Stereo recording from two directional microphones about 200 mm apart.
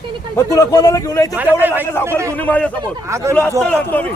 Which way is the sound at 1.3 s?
10° right (ahead or behind).